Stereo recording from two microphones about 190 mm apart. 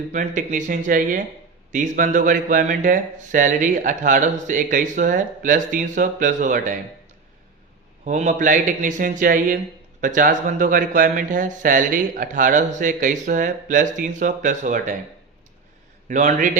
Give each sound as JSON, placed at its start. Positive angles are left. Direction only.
{"t": 0.1, "sound": "speech", "side_deg": -40}
{"t": 8.0, "sound": "speech", "side_deg": -40}
{"t": 16.0, "sound": "speech", "side_deg": -40}